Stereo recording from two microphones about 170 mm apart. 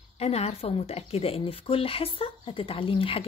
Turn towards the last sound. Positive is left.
turn(degrees=30)  # may be behind; listen again after turning